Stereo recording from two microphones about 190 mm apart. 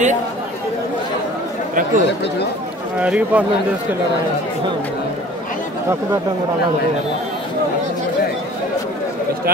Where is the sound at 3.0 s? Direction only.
5° right (ahead or behind).